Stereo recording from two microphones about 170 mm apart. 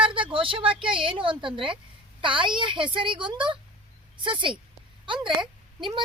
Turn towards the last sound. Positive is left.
turn(degrees=-30)  # may be behind; listen again after turning